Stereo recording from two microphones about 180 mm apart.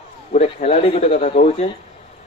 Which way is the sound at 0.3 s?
35° left (ahead or behind).